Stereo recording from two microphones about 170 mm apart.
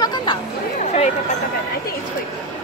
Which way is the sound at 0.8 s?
45° left (ahead or behind).